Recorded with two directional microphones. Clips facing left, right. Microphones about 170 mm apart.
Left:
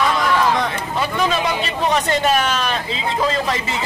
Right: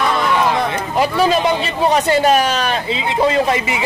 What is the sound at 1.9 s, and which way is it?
Speech, 35° right (ahead or behind).